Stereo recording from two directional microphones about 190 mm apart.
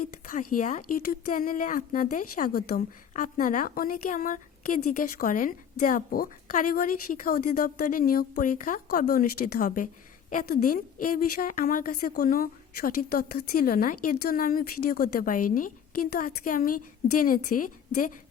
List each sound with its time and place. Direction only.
0.0 s speech: 45° left (ahead or behind)